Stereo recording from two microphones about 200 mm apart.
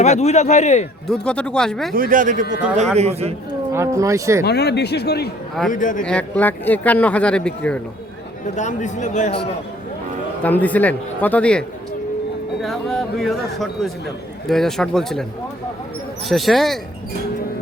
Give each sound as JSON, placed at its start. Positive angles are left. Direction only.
{"t": 0.0, "sound": "a man's voice", "side_deg": 35}
{"t": 1.0, "sound": "speech", "side_deg": 5}
{"t": 1.9, "sound": "speech", "side_deg": -45}
{"t": 3.0, "sound": "a man's voice", "side_deg": -30}
{"t": 3.7, "sound": "speech", "side_deg": -15}
{"t": 4.4, "sound": "speech", "side_deg": 55}
{"t": 5.7, "sound": "a man's voice", "side_deg": 40}
{"t": 6.0, "sound": "speech", "side_deg": 5}
{"t": 8.5, "sound": "a man's voice", "side_deg": 35}
{"t": 10.4, "sound": "speech", "side_deg": 10}
{"t": 12.6, "sound": "speech", "side_deg": 0}
{"t": 16.3, "sound": "speech", "side_deg": 0}